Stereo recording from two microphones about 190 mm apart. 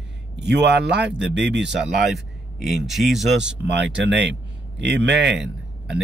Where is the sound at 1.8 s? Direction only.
Centre (ahead or behind).